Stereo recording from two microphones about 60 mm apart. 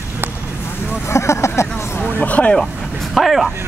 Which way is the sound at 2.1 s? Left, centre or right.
Left.